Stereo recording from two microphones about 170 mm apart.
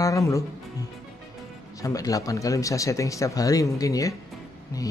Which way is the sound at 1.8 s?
20° left (ahead or behind).